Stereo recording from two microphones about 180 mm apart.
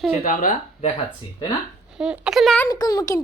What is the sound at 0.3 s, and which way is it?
Speech, 45° left (ahead or behind).